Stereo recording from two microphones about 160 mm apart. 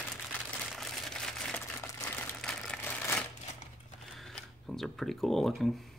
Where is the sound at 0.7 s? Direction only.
Centre (ahead or behind).